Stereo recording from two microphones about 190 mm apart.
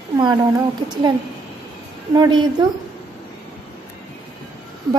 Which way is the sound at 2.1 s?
20° right (ahead or behind).